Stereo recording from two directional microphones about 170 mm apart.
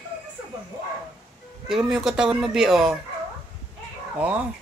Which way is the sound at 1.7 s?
5° right (ahead or behind).